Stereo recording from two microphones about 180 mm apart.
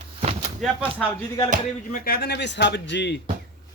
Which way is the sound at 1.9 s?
55° left (ahead or behind).